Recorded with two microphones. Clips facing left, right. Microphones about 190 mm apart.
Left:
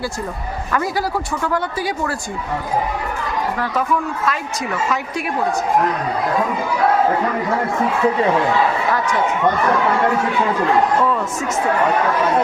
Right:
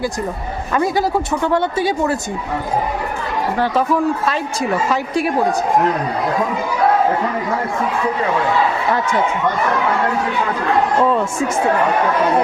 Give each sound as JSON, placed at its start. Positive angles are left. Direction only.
{"t": 0.7, "sound": "speech", "side_deg": -25}
{"t": 3.6, "sound": "speech", "side_deg": -30}